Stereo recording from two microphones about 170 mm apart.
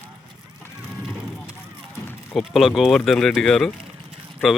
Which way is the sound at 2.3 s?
Centre (ahead or behind).